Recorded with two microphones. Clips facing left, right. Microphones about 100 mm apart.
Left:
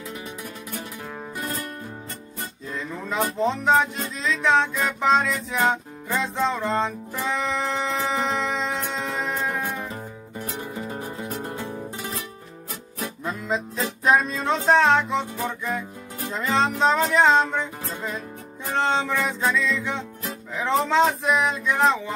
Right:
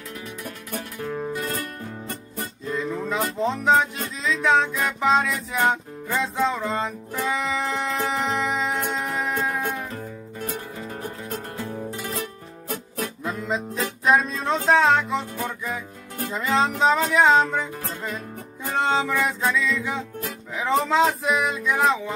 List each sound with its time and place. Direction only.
0.7 s music: 15° left (ahead or behind)
2.7 s music: centre (ahead or behind)
10.7 s music: 15° left (ahead or behind)
12.1 s music: 55° right (ahead or behind)
13.2 s music: centre (ahead or behind)
18.8 s music: 5° right (ahead or behind)